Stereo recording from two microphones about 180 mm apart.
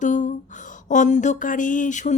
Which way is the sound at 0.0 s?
45° left (ahead or behind).